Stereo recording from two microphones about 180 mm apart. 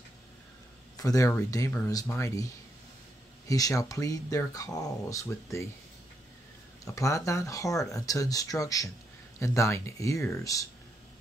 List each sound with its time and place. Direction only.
0.9 s speech: 20° left (ahead or behind)
6.8 s speech: 20° left (ahead or behind)